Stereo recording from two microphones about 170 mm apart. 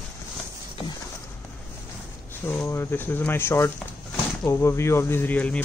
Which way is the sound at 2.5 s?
15° left (ahead or behind).